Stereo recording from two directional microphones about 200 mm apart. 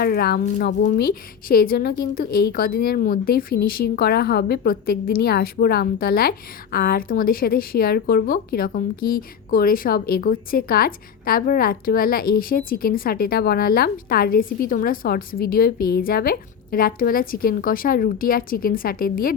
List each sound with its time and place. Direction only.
0.0 s a woman's voice: 50° left (ahead or behind)